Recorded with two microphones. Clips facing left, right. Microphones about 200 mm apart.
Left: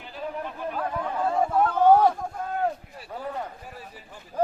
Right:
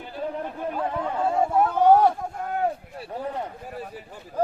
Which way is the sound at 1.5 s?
10° right (ahead or behind).